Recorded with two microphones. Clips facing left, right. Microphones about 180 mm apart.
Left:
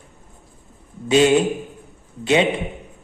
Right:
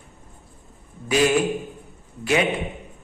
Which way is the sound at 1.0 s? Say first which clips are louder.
Left 4 dB; 25° left (ahead or behind).